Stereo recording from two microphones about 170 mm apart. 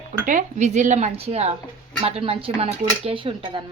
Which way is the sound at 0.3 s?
45° right (ahead or behind).